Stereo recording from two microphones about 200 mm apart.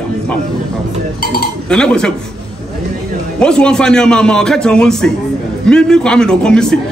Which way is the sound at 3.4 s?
5° left (ahead or behind).